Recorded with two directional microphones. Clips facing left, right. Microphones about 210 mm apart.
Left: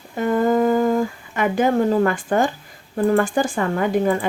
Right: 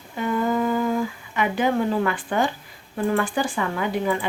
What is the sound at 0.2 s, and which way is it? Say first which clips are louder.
Speech: left 5 dB; 45° left (ahead or behind).